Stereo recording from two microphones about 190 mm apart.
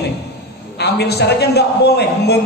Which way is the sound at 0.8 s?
60° left (ahead or behind).